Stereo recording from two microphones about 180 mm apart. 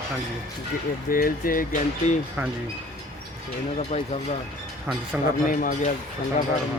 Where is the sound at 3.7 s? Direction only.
35° left (ahead or behind).